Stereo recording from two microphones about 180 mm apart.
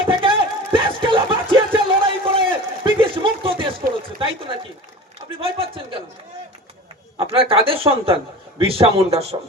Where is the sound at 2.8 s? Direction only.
30° right (ahead or behind).